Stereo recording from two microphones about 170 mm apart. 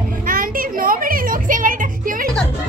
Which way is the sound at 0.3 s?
55° right (ahead or behind).